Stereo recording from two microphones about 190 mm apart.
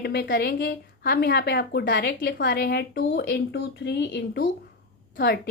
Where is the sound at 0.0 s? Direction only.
60° left (ahead or behind).